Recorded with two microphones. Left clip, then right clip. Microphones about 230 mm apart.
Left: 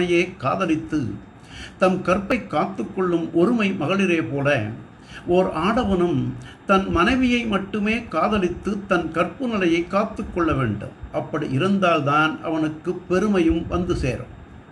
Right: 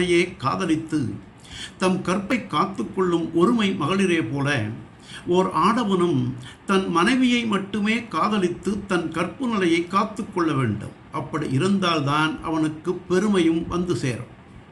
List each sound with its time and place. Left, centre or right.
0.1 s a man's voice: centre